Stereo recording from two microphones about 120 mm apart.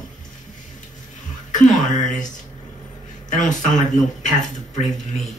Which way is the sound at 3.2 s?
90° left.